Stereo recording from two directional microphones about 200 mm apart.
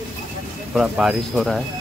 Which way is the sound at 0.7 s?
Centre (ahead or behind).